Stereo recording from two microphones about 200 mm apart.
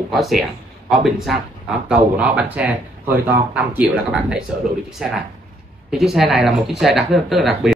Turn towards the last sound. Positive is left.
turn(degrees=0)  # may be behind; listen again after turning